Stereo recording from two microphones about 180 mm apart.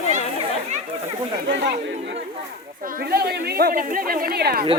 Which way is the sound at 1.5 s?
75° right (ahead or behind).